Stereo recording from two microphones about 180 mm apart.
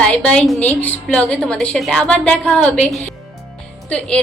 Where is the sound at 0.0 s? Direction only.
5° left (ahead or behind).